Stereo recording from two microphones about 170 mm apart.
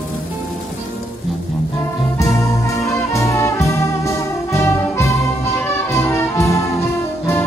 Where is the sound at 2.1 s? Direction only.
20° left (ahead or behind).